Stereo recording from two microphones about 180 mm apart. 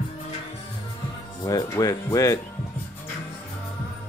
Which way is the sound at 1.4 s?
20° left (ahead or behind).